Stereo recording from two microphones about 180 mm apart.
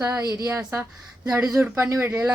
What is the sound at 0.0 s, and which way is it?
A woman's voice, 20° right (ahead or behind).